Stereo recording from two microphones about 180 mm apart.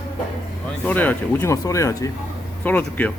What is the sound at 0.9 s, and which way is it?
Speech, 10° left (ahead or behind).